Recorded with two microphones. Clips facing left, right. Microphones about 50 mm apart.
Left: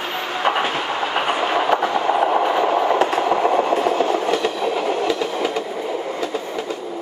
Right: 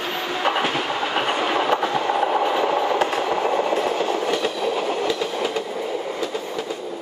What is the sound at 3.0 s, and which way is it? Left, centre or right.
Train, left.